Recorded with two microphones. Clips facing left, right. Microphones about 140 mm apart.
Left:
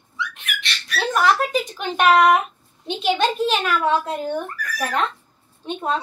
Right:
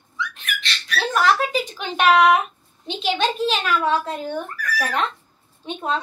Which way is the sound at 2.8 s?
50° left (ahead or behind).